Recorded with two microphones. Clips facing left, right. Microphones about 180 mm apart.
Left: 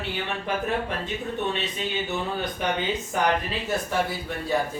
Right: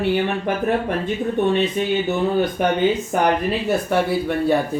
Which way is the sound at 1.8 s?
50° right (ahead or behind).